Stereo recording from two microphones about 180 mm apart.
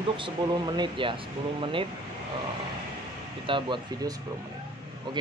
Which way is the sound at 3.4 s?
25° right (ahead or behind).